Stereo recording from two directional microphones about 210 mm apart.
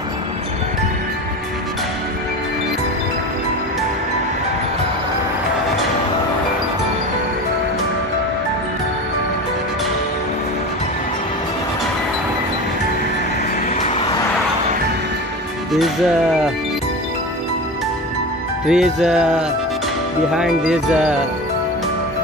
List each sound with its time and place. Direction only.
13.7 s vehicle: 30° left (ahead or behind)
18.7 s music: 5° right (ahead or behind)